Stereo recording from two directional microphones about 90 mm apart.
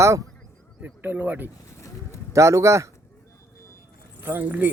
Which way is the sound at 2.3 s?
35° right (ahead or behind).